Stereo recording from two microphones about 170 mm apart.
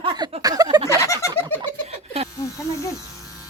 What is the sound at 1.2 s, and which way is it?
Fowl, 15° left (ahead or behind).